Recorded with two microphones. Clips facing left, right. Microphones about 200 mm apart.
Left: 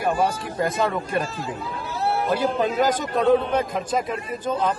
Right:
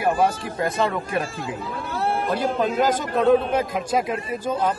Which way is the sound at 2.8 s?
Centre (ahead or behind).